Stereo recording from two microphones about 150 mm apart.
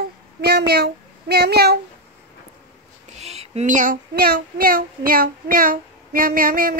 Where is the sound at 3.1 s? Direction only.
45° right (ahead or behind); by 6.7 s 70° right (ahead or behind).